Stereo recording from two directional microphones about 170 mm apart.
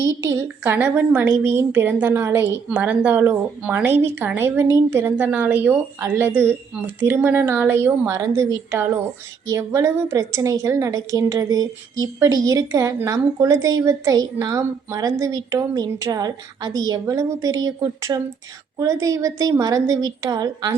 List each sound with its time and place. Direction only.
0.0 s a woman's voice: 15° right (ahead or behind)
9.5 s a woman's voice: 15° right (ahead or behind)